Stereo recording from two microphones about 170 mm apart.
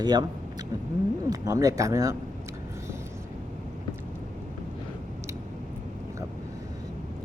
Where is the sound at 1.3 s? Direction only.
20° right (ahead or behind).